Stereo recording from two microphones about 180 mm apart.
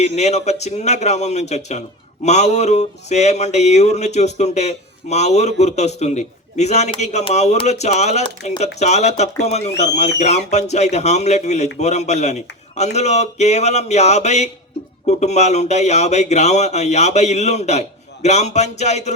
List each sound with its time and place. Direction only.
0.2 s speech: 40° left (ahead or behind)